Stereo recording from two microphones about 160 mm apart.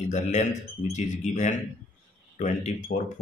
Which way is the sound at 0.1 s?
45° left (ahead or behind).